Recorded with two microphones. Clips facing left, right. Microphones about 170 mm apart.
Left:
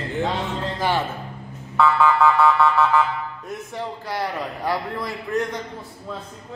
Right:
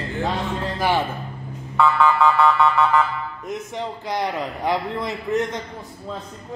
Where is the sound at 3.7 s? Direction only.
20° right (ahead or behind).